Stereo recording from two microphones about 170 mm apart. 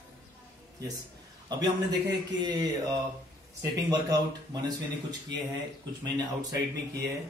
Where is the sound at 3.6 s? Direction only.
20° right (ahead or behind).